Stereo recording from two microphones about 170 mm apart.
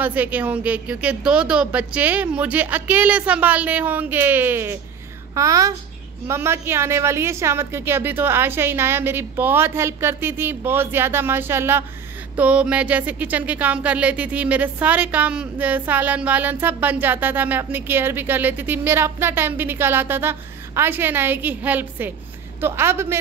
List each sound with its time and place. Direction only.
0.0 s a woman's voice: 10° right (ahead or behind)